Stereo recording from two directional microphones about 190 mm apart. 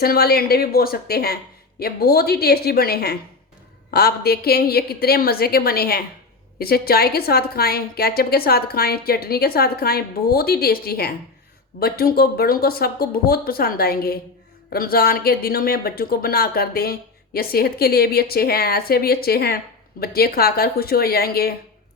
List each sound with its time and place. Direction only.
0.0 s a woman's voice: 55° left (ahead or behind)